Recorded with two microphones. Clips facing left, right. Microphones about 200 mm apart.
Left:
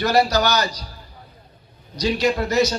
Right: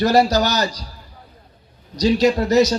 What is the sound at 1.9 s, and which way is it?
Speech, 40° right (ahead or behind).